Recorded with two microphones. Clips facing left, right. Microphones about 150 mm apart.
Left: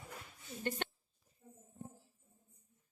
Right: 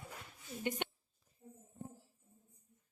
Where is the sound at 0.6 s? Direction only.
15° right (ahead or behind).